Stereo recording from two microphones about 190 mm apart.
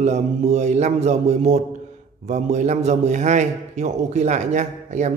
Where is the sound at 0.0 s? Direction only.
35° right (ahead or behind).